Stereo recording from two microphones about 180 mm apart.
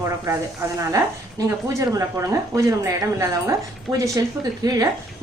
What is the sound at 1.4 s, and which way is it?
A woman's voice, 15° right (ahead or behind).